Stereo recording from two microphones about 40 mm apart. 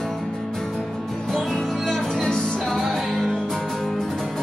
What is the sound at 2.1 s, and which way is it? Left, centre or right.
Music, centre.